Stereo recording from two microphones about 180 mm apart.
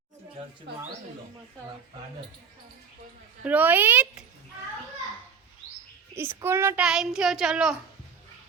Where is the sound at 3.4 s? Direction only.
10° right (ahead or behind).